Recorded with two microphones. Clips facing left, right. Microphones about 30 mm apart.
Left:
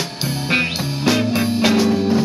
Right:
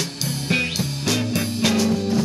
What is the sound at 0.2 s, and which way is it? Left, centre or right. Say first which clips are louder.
Music: left 4 dB; left.